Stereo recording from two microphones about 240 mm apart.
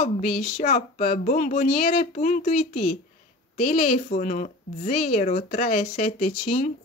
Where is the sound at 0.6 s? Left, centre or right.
Left.